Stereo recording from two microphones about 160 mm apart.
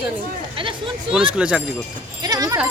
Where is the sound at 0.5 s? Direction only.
35° right (ahead or behind).